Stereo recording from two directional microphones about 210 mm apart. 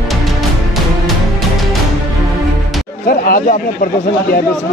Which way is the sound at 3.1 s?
45° left (ahead or behind).